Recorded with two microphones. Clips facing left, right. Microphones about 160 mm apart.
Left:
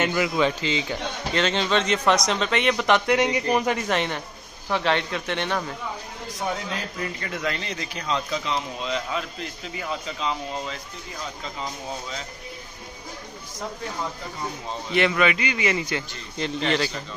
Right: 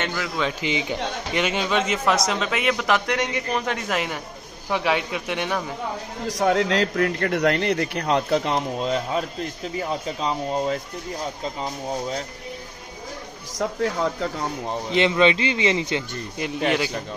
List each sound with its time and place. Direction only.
0.0 s a man's voice: 5° left (ahead or behind)
0.6 s a man's voice: 15° right (ahead or behind); by 3.8 s 10° left (ahead or behind)
3.9 s a man's voice: 5° right (ahead or behind)
6.2 s speech: 80° right; by 12.2 s 40° right (ahead or behind)
13.6 s speech: 80° right
14.9 s a man's voice: 20° right (ahead or behind)
16.3 s speech: 10° right (ahead or behind)